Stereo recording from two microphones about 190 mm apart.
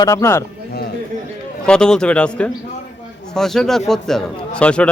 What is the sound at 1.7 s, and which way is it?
Speech, 5° left (ahead or behind).